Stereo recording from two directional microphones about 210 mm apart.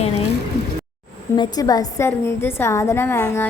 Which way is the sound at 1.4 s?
20° left (ahead or behind).